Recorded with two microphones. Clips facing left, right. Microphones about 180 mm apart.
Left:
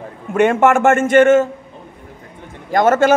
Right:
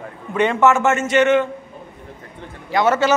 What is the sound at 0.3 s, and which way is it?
A man's voice, 50° left (ahead or behind).